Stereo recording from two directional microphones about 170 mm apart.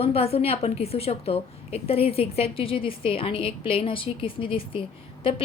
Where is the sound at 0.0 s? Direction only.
35° left (ahead or behind).